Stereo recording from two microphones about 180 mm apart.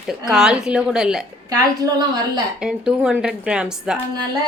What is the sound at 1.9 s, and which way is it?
Speech, 25° right (ahead or behind).